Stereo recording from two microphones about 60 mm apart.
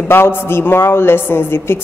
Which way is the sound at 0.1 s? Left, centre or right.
Left.